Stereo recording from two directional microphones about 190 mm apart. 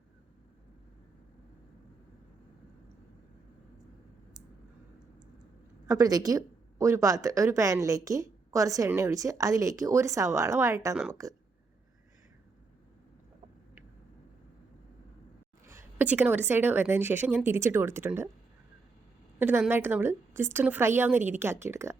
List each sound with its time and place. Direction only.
5.9 s a woman's voice: 20° right (ahead or behind)
15.6 s a woman's voice: 15° right (ahead or behind)
19.4 s a woman's voice: 10° right (ahead or behind)